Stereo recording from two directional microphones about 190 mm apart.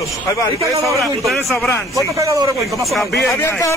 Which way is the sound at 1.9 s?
15° right (ahead or behind).